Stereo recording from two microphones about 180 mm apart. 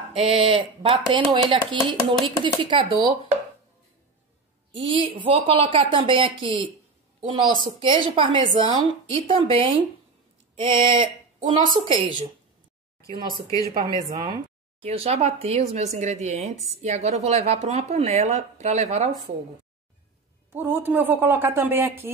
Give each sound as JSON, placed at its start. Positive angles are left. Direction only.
{"t": 0.1, "sound": "a woman's voice", "side_deg": -30}
{"t": 4.7, "sound": "a woman's voice", "side_deg": -30}
{"t": 10.5, "sound": "a sound", "side_deg": -30}
{"t": 11.7, "sound": "speech", "side_deg": -30}
{"t": 13.0, "sound": "speech", "side_deg": 20}
{"t": 14.8, "sound": "speech", "side_deg": -35}
{"t": 20.5, "sound": "a woman's voice", "side_deg": -10}